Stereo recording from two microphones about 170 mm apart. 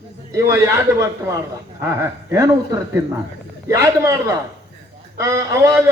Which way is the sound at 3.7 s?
15° right (ahead or behind).